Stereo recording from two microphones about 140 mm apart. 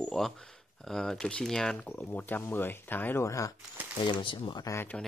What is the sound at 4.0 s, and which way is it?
Speech, 35° left (ahead or behind).